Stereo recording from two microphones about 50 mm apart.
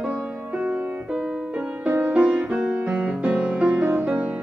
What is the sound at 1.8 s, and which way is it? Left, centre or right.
Music, right.